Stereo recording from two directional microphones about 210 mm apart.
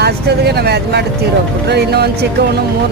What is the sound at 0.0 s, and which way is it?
Speech, 50° right (ahead or behind).